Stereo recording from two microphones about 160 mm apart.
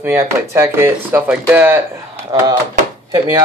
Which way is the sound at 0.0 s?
15° right (ahead or behind).